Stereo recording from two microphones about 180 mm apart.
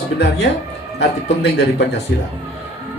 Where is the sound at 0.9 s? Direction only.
75° left (ahead or behind).